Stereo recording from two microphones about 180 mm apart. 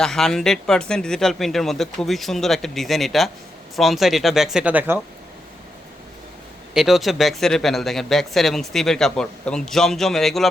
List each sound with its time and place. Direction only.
0.0 s speech: 5° left (ahead or behind)
6.7 s speech: centre (ahead or behind)